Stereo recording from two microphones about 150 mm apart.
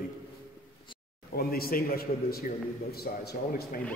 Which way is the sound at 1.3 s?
90° left.